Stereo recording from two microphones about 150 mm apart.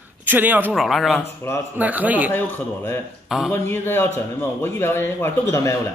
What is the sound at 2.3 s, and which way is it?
Speech, 15° left (ahead or behind).